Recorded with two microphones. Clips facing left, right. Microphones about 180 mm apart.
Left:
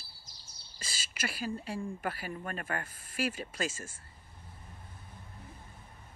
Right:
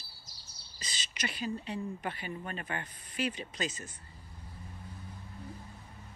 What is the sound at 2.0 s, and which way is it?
Speech, 50° left (ahead or behind).